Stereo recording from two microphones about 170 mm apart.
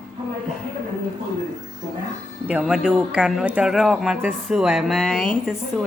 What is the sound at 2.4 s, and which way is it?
Speech, 5° right (ahead or behind).